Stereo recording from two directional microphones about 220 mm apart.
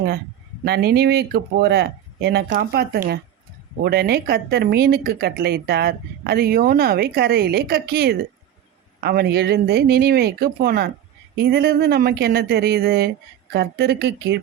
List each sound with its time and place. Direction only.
0.6 s speech: 45° right (ahead or behind)